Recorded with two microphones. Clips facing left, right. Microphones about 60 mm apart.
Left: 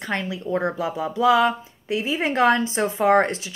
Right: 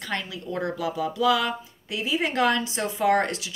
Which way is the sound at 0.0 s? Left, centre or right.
Left.